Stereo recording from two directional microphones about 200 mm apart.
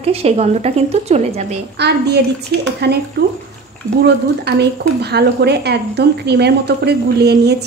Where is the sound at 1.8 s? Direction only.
55° right (ahead or behind).